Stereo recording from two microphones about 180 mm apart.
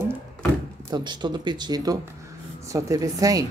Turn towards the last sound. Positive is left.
turn(degrees=-20)  # may be behind; listen again after turning